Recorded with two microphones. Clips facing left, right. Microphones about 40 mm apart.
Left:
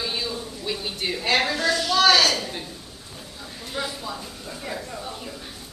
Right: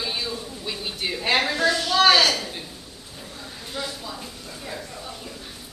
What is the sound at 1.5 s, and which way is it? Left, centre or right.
Speech, right.